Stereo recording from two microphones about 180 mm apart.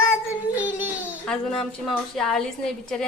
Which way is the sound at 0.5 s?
10° right (ahead or behind).